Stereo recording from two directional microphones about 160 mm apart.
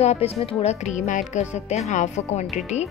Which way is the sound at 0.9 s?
50° left (ahead or behind).